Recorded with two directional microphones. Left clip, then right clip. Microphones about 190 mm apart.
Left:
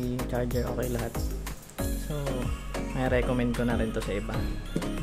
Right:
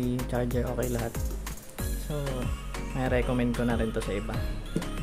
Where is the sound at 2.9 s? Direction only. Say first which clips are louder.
Left 1 dB; centre (ahead or behind).